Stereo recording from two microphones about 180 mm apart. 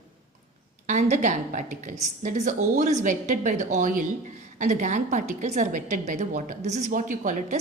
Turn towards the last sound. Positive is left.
turn(degrees=-45)  # may be behind; listen again after turning